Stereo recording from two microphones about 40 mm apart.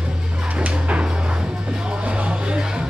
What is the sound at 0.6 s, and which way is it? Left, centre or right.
Dog, right.